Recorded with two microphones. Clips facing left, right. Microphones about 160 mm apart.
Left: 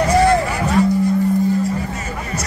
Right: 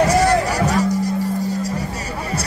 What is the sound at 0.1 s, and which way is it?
Music, 40° right (ahead or behind).